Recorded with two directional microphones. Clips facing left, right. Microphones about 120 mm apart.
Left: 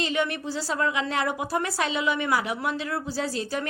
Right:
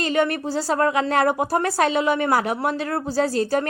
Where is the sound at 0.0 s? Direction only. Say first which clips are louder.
Right 6 dB; 50° right (ahead or behind).